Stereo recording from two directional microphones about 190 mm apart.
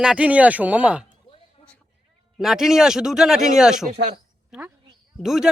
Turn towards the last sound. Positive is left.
turn(degrees=0)  # may be behind; listen again after turning